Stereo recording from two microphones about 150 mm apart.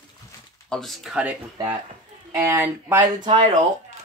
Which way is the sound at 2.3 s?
15° right (ahead or behind).